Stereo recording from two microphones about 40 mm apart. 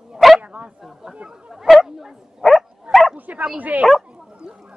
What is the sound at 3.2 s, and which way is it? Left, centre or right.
Bow-wow, right.